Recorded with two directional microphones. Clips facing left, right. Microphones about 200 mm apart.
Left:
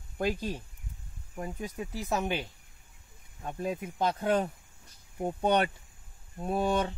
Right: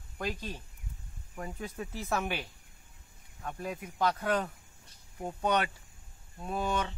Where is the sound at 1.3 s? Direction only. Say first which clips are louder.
Left 3 dB; 15° left (ahead or behind).